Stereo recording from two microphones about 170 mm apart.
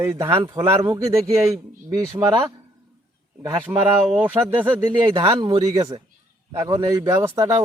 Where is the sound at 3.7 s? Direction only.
10° right (ahead or behind).